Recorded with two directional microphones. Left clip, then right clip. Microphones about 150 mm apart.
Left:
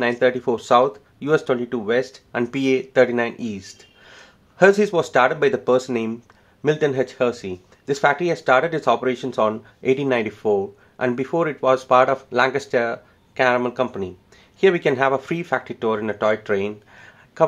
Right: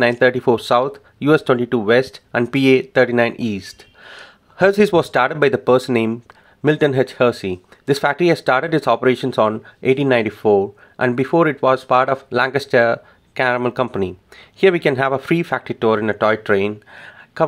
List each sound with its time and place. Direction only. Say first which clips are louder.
0.0 s speech: right 5 dB; 30° right (ahead or behind)